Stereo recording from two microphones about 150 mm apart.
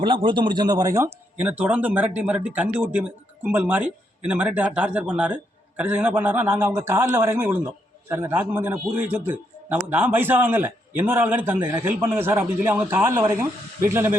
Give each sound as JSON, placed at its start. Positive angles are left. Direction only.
{"t": 0.0, "sound": "speech", "side_deg": -35}